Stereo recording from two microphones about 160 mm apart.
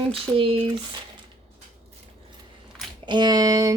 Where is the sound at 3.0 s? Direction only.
25° right (ahead or behind).